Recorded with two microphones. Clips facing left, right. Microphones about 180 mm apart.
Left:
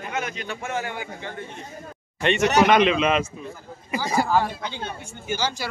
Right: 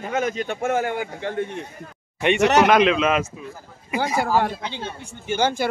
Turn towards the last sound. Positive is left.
turn(degrees=-55)  # may be behind; listen again after turning